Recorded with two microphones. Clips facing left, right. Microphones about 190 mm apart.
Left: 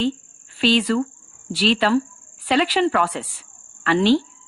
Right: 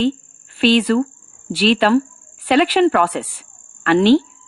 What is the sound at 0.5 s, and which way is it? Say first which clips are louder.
A woman's voice: right 4 dB; 55° right (ahead or behind).